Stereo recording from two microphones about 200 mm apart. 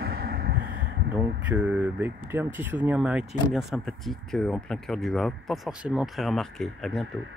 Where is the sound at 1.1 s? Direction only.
5° right (ahead or behind).